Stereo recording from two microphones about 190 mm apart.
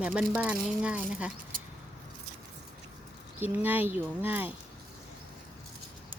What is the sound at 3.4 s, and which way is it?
Speech, 10° right (ahead or behind).